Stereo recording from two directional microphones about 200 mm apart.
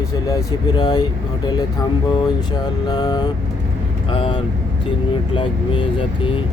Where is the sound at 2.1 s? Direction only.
20° left (ahead or behind).